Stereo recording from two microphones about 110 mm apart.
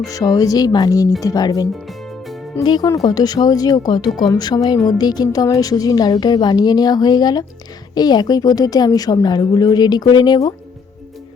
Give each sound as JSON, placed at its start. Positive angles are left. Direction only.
{"t": 0.1, "sound": "a woman's voice", "side_deg": 30}
{"t": 1.7, "sound": "music", "side_deg": 0}
{"t": 2.6, "sound": "a woman's voice", "side_deg": 40}